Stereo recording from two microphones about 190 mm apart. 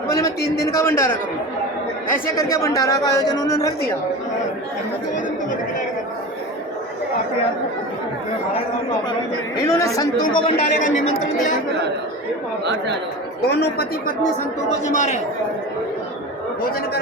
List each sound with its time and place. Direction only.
0.6 s speech: 15° left (ahead or behind)
2.3 s speech: 15° left (ahead or behind)
9.6 s speech: 15° left (ahead or behind)
10.8 s speech: 40° left (ahead or behind)
13.4 s speech: 55° left (ahead or behind)
14.8 s speech: 40° left (ahead or behind)